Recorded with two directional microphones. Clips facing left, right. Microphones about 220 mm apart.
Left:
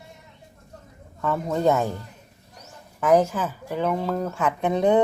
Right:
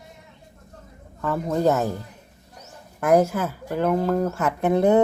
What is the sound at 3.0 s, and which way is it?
Speech, 10° right (ahead or behind).